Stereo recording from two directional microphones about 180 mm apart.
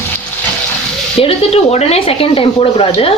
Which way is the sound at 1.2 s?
35° left (ahead or behind).